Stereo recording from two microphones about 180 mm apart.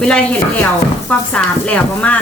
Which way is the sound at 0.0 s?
5° left (ahead or behind).